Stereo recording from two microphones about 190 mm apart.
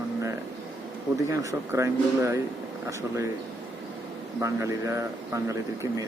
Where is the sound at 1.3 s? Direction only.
15° right (ahead or behind).